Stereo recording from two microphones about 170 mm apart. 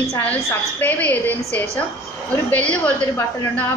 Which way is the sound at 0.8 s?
10° left (ahead or behind).